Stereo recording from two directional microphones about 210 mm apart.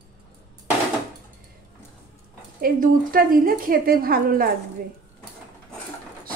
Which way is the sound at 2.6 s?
40° right (ahead or behind).